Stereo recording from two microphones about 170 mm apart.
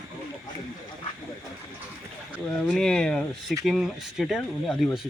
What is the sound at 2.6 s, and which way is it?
Speech, 5° left (ahead or behind).